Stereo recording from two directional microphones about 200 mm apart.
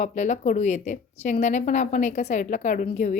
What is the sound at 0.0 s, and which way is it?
A woman's voice, 35° left (ahead or behind).